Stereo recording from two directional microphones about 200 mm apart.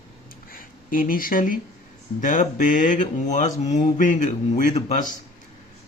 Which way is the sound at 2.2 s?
40° left (ahead or behind).